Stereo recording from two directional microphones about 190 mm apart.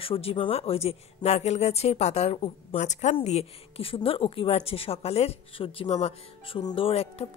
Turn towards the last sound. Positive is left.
turn(degrees=30)  # may be behind; listen again after turning